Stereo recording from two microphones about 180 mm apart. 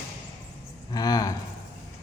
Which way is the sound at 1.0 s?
20° left (ahead or behind).